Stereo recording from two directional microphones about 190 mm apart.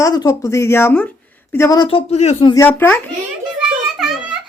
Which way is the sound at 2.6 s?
10° left (ahead or behind).